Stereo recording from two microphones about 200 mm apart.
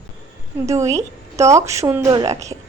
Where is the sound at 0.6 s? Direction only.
15° right (ahead or behind).